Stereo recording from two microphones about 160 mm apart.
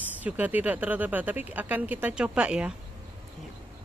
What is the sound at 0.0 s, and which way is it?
Speech, 10° right (ahead or behind).